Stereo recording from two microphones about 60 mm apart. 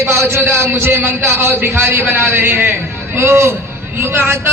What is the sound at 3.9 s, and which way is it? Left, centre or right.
Speech, right.